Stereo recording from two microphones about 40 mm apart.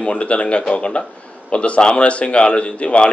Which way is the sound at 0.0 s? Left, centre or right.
Left.